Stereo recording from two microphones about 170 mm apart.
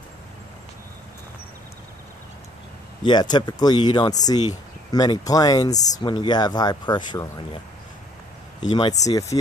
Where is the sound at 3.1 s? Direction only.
25° left (ahead or behind).